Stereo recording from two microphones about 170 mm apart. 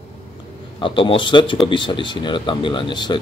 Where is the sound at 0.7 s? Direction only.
30° left (ahead or behind).